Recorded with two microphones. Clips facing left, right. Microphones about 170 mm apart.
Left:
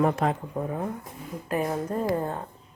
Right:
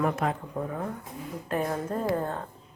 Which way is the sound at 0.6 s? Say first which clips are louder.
Left 2 dB; 10° left (ahead or behind).